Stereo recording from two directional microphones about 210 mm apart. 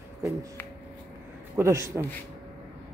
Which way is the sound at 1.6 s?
15° right (ahead or behind).